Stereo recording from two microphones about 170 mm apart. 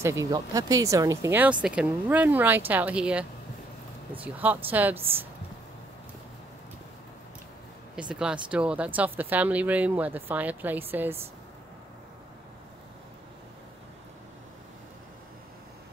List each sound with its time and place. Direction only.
0.0 s speech: 20° right (ahead or behind)
7.9 s speech: 5° right (ahead or behind)